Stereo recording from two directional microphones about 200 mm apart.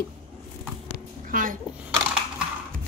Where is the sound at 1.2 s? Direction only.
40° right (ahead or behind).